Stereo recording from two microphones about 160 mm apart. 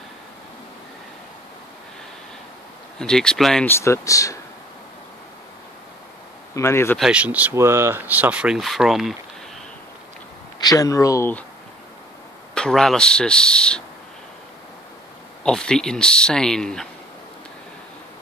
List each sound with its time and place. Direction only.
3.0 s speech: 5° left (ahead or behind)
3.6 s speech: 15° left (ahead or behind)
6.5 s speech: 15° left (ahead or behind)
7.0 s speech: 5° right (ahead or behind)
10.6 s speech: 20° left (ahead or behind)
12.5 s speech: 5° left (ahead or behind)
15.4 s speech: 5° left (ahead or behind)